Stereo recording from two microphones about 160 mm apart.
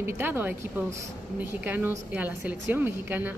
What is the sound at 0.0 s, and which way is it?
Speech, 10° right (ahead or behind).